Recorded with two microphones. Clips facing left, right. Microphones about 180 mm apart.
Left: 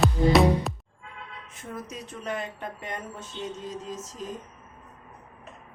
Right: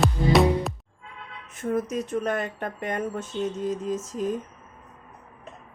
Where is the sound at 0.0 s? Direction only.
Centre (ahead or behind).